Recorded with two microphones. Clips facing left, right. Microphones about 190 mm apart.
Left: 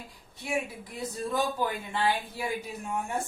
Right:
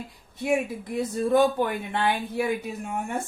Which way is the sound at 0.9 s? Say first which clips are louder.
Right 9 dB; 60° right (ahead or behind).